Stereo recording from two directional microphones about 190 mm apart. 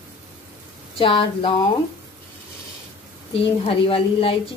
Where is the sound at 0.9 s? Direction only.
25° left (ahead or behind).